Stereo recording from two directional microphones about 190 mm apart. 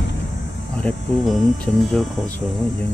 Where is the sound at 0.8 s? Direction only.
5° left (ahead or behind).